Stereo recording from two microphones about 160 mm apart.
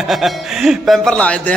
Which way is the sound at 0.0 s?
Centre (ahead or behind).